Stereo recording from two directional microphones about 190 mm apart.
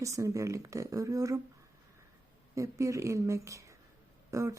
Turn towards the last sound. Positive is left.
turn(degrees=-15)  # may be behind; listen again after turning